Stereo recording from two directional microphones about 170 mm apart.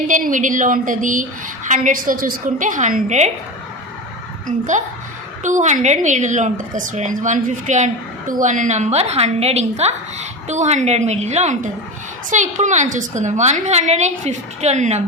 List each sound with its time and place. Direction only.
0.1 s a woman's voice: 50° right (ahead or behind)
4.4 s a woman's voice: 50° right (ahead or behind)